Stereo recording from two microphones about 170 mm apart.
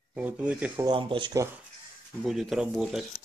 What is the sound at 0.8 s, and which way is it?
Speech, 30° right (ahead or behind).